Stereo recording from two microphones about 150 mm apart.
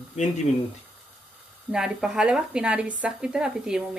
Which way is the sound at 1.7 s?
5° right (ahead or behind).